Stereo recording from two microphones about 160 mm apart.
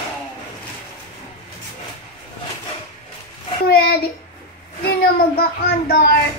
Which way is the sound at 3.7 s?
75° left (ahead or behind).